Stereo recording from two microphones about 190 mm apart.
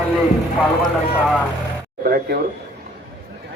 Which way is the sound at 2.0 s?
50° right (ahead or behind).